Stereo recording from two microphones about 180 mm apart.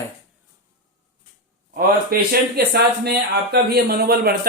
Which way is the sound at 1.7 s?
60° right (ahead or behind).